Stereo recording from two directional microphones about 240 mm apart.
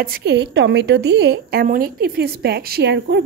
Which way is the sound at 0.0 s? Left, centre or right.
Right.